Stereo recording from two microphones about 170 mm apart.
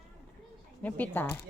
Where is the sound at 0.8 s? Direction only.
10° left (ahead or behind).